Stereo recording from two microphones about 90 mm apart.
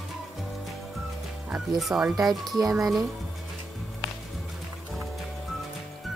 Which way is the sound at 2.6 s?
40° right (ahead or behind).